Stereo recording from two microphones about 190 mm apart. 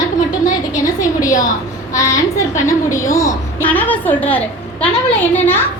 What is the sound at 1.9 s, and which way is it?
A woman's voice, 15° left (ahead or behind).